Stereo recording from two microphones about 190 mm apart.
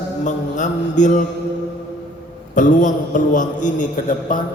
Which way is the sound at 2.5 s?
40° left (ahead or behind).